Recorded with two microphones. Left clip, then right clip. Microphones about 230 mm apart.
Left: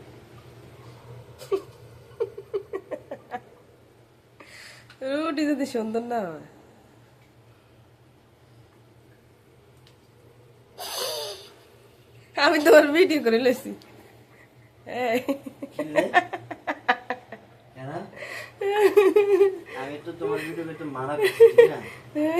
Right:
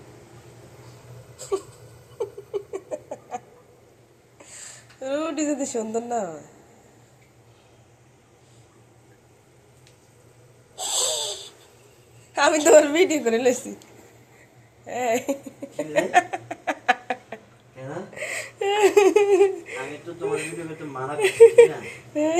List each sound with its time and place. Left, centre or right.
1.4 s a sound: centre
5.0 s a woman's voice: centre
10.8 s wheeze: centre
12.3 s a woman's voice: centre
14.8 s a woman's voice: centre
15.8 s a sound: centre
18.1 s speech: centre
21.2 s speech: centre